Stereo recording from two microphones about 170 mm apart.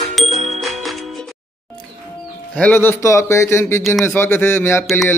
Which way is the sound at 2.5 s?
10° left (ahead or behind).